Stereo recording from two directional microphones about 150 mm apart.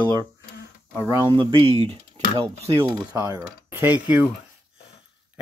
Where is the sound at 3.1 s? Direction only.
20° right (ahead or behind).